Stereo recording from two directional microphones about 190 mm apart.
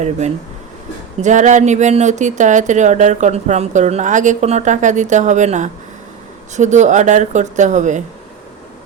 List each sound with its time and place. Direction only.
1.2 s speech: 40° right (ahead or behind)